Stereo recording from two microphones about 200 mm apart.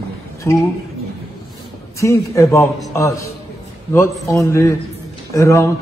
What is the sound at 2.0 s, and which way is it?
A man's voice, 15° left (ahead or behind).